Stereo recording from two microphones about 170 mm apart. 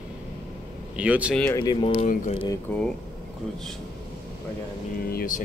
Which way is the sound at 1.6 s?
30° left (ahead or behind).